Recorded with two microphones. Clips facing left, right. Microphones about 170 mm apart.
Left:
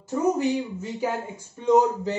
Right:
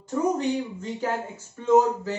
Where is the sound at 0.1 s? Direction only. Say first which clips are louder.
Left 1 dB; 10° left (ahead or behind).